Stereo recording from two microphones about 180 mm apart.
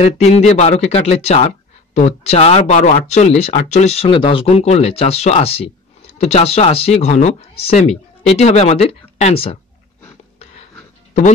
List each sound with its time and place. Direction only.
0.0 s speech: 40° left (ahead or behind)